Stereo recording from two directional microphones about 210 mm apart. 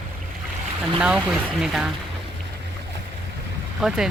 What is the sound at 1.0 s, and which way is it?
Speech, 5° right (ahead or behind).